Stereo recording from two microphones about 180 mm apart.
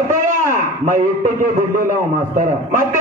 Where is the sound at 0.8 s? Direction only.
45° right (ahead or behind).